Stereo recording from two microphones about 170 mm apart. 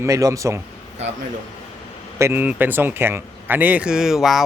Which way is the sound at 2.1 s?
15° right (ahead or behind).